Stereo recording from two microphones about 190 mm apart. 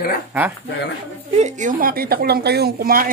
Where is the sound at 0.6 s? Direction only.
70° left (ahead or behind).